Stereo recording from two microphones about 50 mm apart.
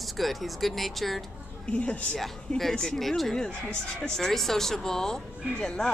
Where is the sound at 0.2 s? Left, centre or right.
Centre.